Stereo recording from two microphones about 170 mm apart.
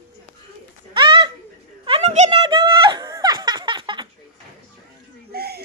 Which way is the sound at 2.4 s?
30° right (ahead or behind).